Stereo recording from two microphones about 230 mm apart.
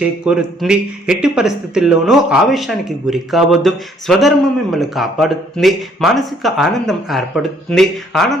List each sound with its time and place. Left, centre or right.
0.0 s speech: centre